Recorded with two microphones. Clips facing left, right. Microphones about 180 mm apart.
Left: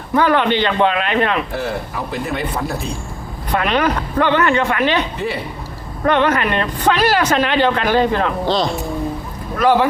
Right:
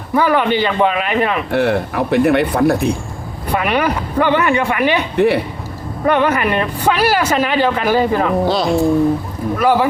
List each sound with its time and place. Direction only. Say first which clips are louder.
0.1 s speech: right 1 dB; 5° right (ahead or behind)
1.5 s speech: right 7 dB; 70° right (ahead or behind)
3.5 s speech: right 1 dB; 10° right (ahead or behind)
5.1 s a man's voice: right 10 dB; 65° right (ahead or behind)
6.1 s speech: right 1 dB; 10° right (ahead or behind)